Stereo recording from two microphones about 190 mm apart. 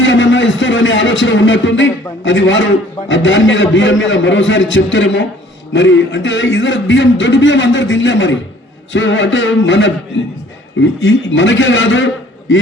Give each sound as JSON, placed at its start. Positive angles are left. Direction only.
{"t": 0.0, "sound": "a man's voice", "side_deg": 75}
{"t": 10.2, "sound": "a man's voice", "side_deg": 90}
{"t": 10.8, "sound": "a man's voice", "side_deg": 80}